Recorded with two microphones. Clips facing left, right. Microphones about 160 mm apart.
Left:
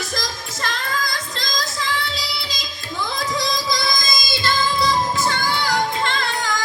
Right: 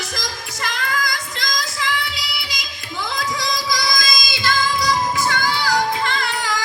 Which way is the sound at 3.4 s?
20° left (ahead or behind).